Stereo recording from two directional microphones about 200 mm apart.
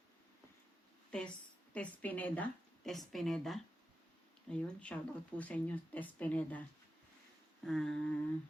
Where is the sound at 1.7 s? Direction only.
5° left (ahead or behind).